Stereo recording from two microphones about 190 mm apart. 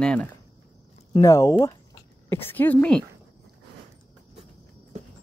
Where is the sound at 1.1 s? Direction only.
15° left (ahead or behind).